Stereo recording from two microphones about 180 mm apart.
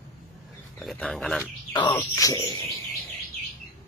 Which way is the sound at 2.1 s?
20° left (ahead or behind).